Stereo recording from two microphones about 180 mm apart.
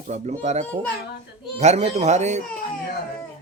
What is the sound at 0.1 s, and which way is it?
Speech, 40° right (ahead or behind).